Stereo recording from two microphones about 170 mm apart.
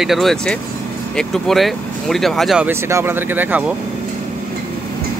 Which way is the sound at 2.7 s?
15° right (ahead or behind).